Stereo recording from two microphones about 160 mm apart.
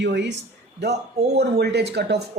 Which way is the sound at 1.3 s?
90° right.